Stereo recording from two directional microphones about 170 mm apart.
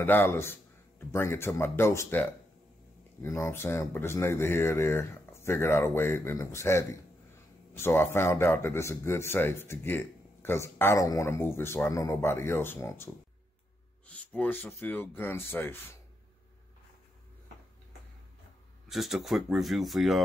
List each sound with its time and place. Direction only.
0.0 s speech: 10° left (ahead or behind)
14.0 s a sound: 5° left (ahead or behind)
14.8 s speech: 10° left (ahead or behind)
18.9 s speech: centre (ahead or behind)